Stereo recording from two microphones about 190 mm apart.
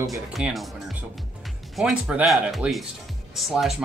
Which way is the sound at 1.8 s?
5° right (ahead or behind).